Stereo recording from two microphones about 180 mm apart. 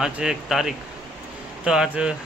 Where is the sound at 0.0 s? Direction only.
5° right (ahead or behind).